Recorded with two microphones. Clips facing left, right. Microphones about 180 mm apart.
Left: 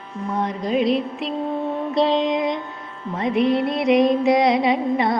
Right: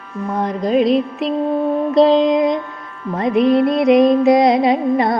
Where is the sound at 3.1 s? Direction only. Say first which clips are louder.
Right 5 dB; 40° right (ahead or behind).